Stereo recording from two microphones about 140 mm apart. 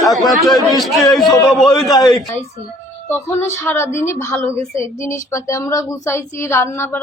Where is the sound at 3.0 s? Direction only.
15° left (ahead or behind).